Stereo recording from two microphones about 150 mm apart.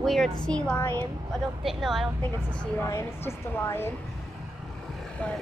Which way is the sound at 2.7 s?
15° left (ahead or behind).